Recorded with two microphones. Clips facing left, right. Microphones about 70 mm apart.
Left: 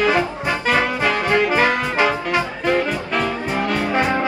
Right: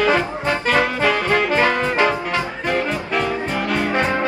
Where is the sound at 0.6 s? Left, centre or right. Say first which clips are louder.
Even; centre.